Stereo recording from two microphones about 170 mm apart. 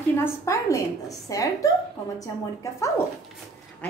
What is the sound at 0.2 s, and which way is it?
A woman's voice, 15° left (ahead or behind).